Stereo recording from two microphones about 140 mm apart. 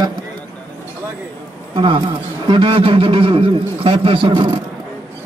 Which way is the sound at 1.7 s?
35° right (ahead or behind).